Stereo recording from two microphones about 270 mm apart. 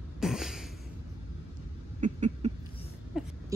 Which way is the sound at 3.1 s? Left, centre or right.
Centre.